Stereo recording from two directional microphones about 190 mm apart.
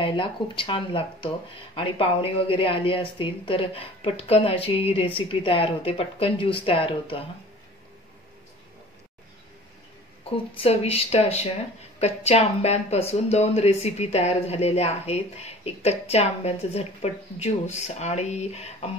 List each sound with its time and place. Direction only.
0.0 s speech: 25° left (ahead or behind)
10.3 s speech: 30° left (ahead or behind)